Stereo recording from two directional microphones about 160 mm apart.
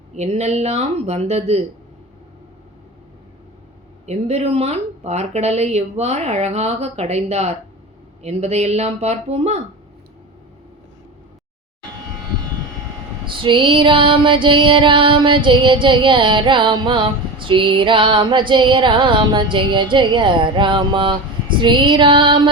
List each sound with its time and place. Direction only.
0.1 s speech: 45° right (ahead or behind)
4.0 s speech: 45° right (ahead or behind)
13.4 s female singing: 30° right (ahead or behind)